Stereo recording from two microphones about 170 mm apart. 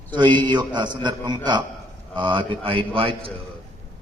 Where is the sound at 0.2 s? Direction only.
25° right (ahead or behind).